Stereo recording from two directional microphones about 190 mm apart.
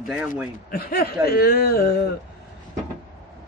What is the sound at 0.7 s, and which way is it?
Speech, 50° left (ahead or behind).